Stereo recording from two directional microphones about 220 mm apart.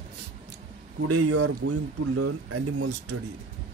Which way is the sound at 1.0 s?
90° right.